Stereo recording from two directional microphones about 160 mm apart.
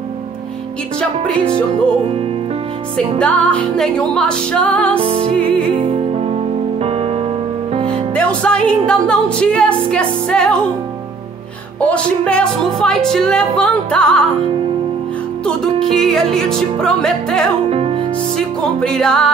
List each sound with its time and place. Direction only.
3.2 s music: 10° left (ahead or behind)
4.9 s music: 40° right (ahead or behind)
7.9 s music: 5° left (ahead or behind)
9.8 s a woman's voice: 5° left (ahead or behind)
11.8 s a woman's voice: 5° left (ahead or behind)
15.4 s a woman's voice: 5° left (ahead or behind)
17.6 s music: 40° right (ahead or behind)
18.3 s a woman's voice: 5° left (ahead or behind)